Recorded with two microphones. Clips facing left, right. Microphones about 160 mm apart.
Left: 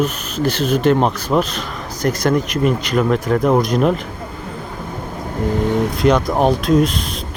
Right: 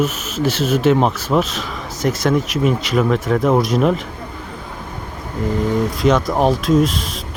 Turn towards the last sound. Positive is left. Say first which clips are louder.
# even
turn(degrees=0)  # may be behind; listen again after turning